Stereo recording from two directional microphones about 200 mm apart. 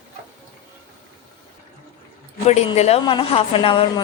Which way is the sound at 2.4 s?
30° left (ahead or behind).